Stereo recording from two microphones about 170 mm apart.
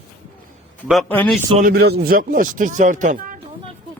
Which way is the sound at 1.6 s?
65° right (ahead or behind).